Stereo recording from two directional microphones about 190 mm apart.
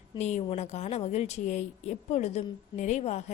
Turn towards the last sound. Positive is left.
turn(degrees=35)  # may be behind; listen again after turning